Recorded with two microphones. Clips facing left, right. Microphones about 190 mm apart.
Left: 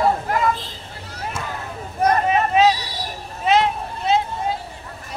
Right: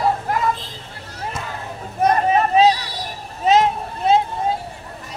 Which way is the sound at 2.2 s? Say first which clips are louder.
Right 3 dB; 35° right (ahead or behind).